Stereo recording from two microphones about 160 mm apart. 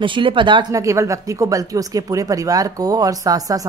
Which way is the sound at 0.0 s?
30° right (ahead or behind).